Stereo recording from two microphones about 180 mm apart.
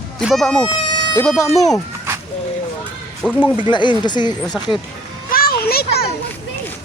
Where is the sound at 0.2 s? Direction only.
Centre (ahead or behind).